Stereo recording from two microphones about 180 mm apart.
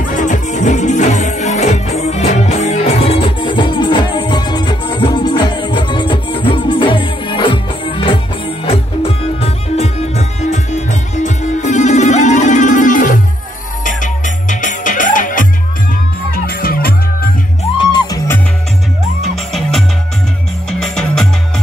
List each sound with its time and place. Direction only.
0.0 s music: 45° left (ahead or behind)
17.7 s music: 20° left (ahead or behind)
20.8 s music: 5° left (ahead or behind)